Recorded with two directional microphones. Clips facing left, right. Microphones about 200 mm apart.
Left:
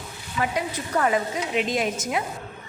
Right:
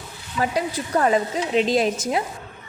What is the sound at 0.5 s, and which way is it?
A woman's voice, 30° right (ahead or behind).